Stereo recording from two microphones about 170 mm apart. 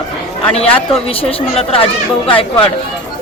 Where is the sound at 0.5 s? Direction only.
35° left (ahead or behind).